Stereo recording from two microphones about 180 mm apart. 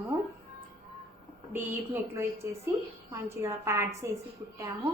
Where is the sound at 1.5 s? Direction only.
10° right (ahead or behind).